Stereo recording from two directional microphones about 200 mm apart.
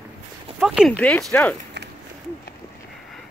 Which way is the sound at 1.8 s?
60° right (ahead or behind).